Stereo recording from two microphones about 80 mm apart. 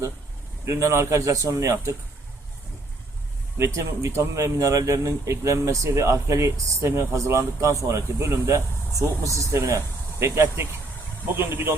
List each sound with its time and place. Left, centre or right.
0.6 s speech: right
3.6 s speech: right